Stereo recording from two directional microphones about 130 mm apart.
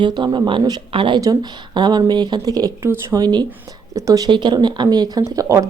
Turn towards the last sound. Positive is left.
turn(degrees=-25)  # may be behind; listen again after turning